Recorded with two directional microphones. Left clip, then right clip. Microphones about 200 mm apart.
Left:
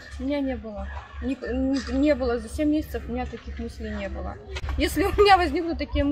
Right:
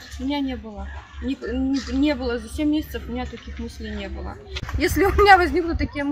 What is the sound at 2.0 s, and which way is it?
A woman's voice, 5° left (ahead or behind).